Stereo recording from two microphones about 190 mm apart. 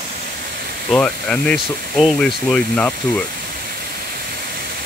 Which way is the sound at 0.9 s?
5° left (ahead or behind).